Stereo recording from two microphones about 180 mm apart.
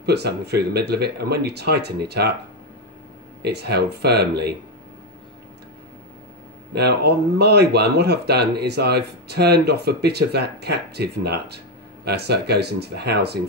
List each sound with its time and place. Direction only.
0.0 s speech: 65° right (ahead or behind)
3.4 s speech: 65° right (ahead or behind)
6.7 s speech: 65° right (ahead or behind)